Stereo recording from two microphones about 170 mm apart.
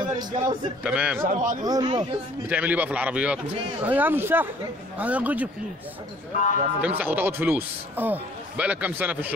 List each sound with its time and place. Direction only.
0.0 s a man's voice: 25° right (ahead or behind)
0.8 s speech: 5° right (ahead or behind)
1.2 s a man's voice: 50° right (ahead or behind)
1.6 s speech: 25° right (ahead or behind)
2.5 s speech: 10° right (ahead or behind)
6.8 s speech: 10° right (ahead or behind)